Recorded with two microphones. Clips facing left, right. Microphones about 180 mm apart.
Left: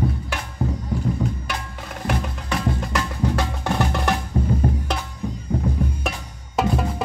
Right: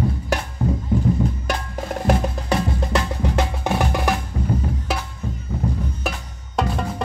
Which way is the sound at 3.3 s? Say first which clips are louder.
Right 2 dB; 15° right (ahead or behind).